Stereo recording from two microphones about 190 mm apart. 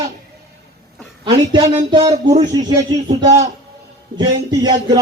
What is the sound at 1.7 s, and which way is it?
Music, 30° right (ahead or behind).